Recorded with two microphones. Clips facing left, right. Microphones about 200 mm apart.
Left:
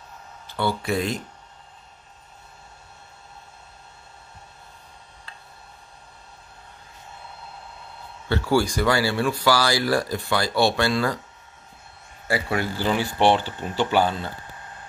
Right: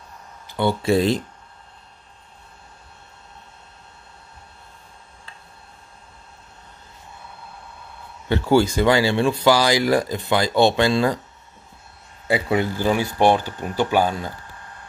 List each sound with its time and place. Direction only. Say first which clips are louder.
0.5 s speech: right 5 dB; 20° right (ahead or behind)
8.3 s speech: right 4 dB; 20° right (ahead or behind)
12.3 s speech: right 4 dB; 20° right (ahead or behind)